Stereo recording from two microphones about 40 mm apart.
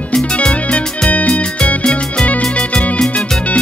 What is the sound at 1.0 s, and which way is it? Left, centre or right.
Music, left.